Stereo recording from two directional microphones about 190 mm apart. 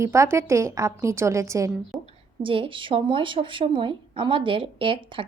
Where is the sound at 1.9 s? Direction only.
Centre (ahead or behind).